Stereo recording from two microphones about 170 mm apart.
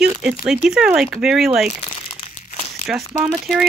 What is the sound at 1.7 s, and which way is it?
Crumpling, 40° left (ahead or behind).